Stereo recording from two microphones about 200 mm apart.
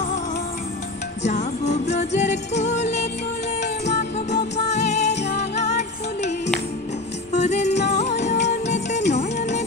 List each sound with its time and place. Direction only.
1.2 s music: 35° left (ahead or behind)